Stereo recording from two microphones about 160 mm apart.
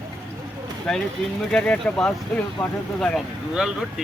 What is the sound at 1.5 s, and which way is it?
Speech, 5° left (ahead or behind).